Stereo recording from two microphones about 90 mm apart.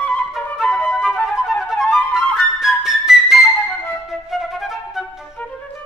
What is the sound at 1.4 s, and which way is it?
Flute, 5° right (ahead or behind).